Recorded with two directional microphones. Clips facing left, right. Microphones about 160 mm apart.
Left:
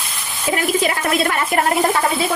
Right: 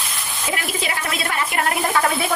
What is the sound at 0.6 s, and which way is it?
Speech, 50° left (ahead or behind).